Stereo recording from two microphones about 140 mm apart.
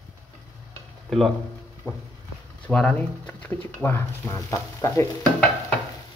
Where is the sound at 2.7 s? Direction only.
5° left (ahead or behind).